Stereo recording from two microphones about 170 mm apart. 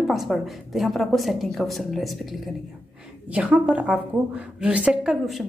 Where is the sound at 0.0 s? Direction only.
Centre (ahead or behind).